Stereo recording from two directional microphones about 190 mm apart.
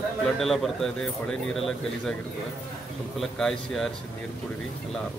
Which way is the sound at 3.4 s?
Centre (ahead or behind).